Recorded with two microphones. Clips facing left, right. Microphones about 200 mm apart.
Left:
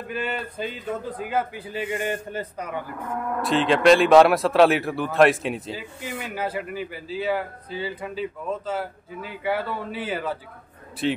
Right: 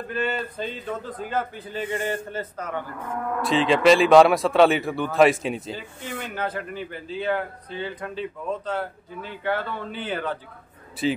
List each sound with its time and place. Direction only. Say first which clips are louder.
0.1 s speech: right 2 dB; 10° left (ahead or behind)
3.4 s a man's voice: even; centre (ahead or behind)